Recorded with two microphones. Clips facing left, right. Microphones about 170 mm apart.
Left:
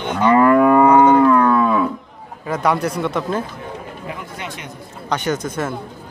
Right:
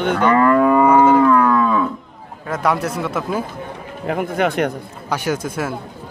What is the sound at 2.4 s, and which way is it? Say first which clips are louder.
Speech: left 1 dB; centre (ahead or behind).